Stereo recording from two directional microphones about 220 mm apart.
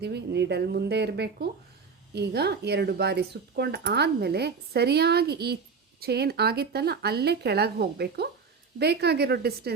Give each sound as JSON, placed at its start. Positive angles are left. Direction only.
{"t": 0.0, "sound": "speech", "side_deg": -50}